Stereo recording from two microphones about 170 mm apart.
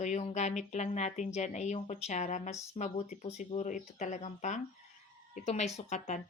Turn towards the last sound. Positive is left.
turn(degrees=40)  # may be behind; listen again after turning